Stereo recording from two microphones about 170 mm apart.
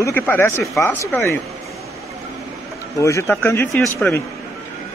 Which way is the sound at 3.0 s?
15° left (ahead or behind).